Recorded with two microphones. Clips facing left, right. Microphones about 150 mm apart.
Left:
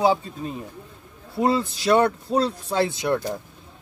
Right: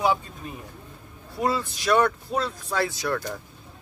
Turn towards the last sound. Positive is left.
turn(degrees=20)  # may be behind; listen again after turning